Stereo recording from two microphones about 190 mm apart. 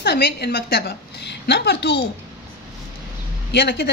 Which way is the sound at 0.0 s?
60° left (ahead or behind).